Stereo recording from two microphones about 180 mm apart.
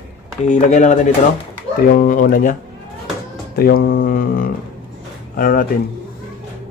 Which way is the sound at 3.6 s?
55° left (ahead or behind).